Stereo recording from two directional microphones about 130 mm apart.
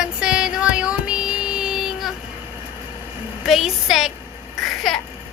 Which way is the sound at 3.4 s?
Centre (ahead or behind).